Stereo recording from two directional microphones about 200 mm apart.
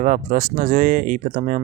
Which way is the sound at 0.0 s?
40° right (ahead or behind).